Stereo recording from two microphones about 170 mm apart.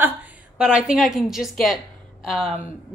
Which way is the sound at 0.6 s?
5° right (ahead or behind).